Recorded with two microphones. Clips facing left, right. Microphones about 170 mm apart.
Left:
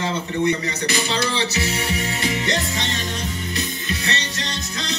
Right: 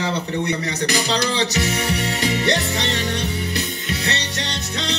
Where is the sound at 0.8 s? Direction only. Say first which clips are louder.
Right 2 dB; 75° right (ahead or behind).